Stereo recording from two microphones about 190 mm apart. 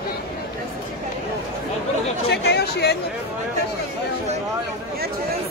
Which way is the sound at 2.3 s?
60° left (ahead or behind).